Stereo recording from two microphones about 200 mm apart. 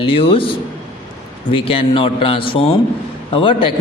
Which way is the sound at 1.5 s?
30° left (ahead or behind).